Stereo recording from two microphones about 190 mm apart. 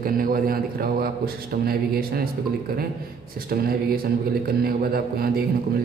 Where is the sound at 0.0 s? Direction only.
50° right (ahead or behind).